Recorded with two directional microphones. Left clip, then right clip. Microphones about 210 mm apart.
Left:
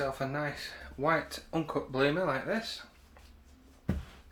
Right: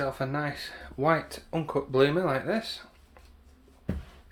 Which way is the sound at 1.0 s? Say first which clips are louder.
Right 4 dB; 55° right (ahead or behind).